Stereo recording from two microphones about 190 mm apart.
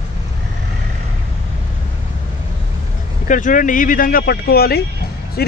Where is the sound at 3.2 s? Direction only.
45° left (ahead or behind).